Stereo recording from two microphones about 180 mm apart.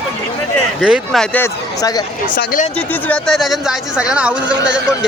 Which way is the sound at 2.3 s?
50° left (ahead or behind).